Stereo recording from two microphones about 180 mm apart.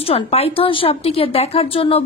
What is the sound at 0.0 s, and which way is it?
A woman's voice, 35° left (ahead or behind).